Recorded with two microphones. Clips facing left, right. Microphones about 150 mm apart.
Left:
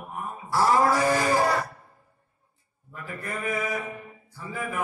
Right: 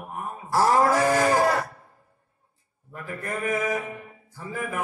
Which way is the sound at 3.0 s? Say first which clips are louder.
Right 3 dB; 45° right (ahead or behind).